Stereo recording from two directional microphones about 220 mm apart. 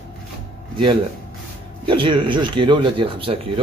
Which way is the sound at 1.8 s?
20° right (ahead or behind).